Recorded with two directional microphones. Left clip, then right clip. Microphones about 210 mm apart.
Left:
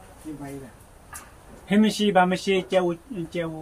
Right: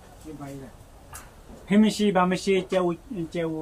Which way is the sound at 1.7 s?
20° right (ahead or behind).